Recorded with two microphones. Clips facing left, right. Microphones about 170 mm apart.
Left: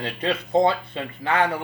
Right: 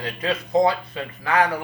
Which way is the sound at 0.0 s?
30° left (ahead or behind).